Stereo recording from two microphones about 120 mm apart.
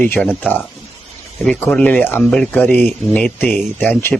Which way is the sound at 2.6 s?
15° left (ahead or behind).